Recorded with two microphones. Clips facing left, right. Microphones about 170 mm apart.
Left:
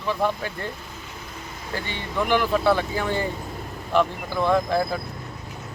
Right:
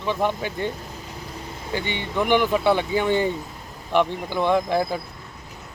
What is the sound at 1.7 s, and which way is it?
Speech, 20° right (ahead or behind).